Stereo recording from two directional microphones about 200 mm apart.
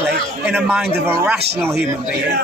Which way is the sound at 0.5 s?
10° right (ahead or behind).